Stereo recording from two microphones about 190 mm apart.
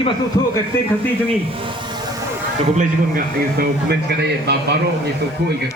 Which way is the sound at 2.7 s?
50° right (ahead or behind).